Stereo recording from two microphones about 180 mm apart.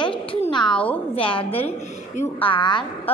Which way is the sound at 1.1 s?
30° left (ahead or behind).